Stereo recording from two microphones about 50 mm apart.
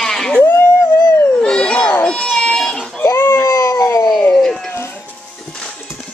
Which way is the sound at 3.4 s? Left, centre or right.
Left.